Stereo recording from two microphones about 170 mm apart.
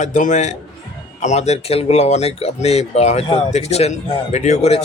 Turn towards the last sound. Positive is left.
turn(degrees=40)  # may be behind; listen again after turning